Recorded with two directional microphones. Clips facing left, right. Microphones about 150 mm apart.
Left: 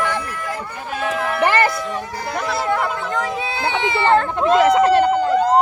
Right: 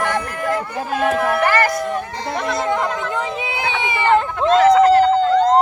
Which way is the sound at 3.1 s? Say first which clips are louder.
Even; 15° right (ahead or behind).